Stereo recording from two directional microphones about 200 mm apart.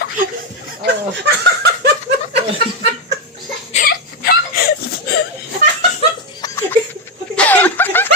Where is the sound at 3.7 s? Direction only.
45° left (ahead or behind).